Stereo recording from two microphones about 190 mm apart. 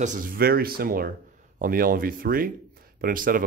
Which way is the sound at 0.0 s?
45° right (ahead or behind).